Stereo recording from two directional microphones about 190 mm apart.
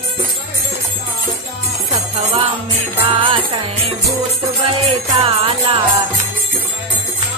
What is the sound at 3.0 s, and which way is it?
Music, 30° right (ahead or behind).